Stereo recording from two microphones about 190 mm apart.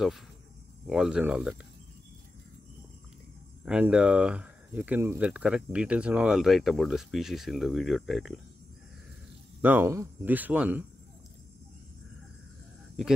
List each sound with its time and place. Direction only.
0.8 s speech: 5° right (ahead or behind)
3.6 s speech: 5° right (ahead or behind)
9.6 s speech: 10° right (ahead or behind)